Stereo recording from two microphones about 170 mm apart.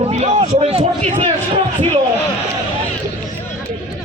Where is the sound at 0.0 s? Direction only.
40° right (ahead or behind).